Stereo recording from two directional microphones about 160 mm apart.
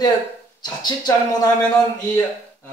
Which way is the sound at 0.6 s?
25° left (ahead or behind).